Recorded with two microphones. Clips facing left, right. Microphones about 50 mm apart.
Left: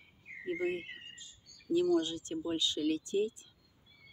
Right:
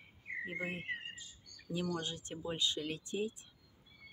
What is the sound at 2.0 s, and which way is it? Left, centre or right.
Speech, right.